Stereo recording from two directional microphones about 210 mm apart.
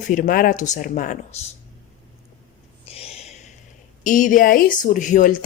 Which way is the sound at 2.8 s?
30° left (ahead or behind).